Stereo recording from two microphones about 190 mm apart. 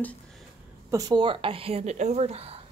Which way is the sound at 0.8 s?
20° right (ahead or behind).